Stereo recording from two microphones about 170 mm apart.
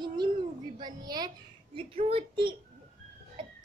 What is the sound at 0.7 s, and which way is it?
A woman's voice, 25° right (ahead or behind).